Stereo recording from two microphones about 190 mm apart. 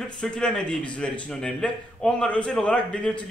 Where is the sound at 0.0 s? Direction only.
5° left (ahead or behind).